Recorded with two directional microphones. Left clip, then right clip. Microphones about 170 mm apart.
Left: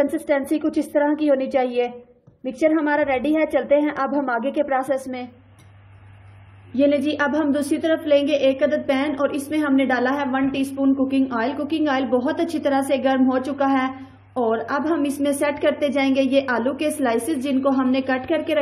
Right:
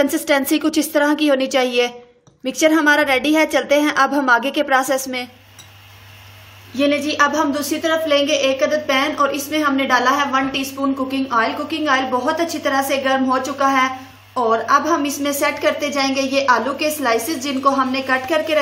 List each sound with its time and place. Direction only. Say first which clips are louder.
0.0 s a woman's voice: right 4 dB; 10° right (ahead or behind)
6.8 s a woman's voice: right 3 dB; 25° left (ahead or behind)